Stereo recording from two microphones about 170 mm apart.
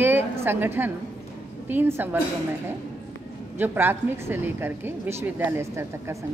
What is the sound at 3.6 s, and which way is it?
A woman's voice, 10° right (ahead or behind).